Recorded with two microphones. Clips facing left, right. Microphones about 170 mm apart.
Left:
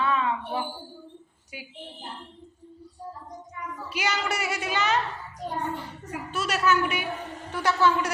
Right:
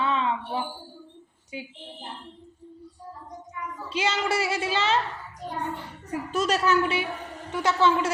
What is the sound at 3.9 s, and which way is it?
A man's voice, 25° right (ahead or behind).